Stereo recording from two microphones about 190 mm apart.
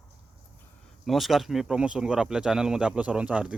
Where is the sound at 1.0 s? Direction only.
Centre (ahead or behind).